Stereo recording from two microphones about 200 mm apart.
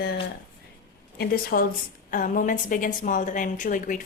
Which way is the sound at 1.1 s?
50° left (ahead or behind).